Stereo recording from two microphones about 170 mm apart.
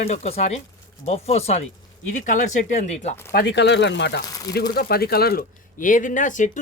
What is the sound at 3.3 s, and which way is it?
Speech, 80° left.